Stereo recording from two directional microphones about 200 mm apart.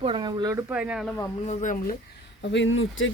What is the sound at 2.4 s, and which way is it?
Speech, 65° left (ahead or behind).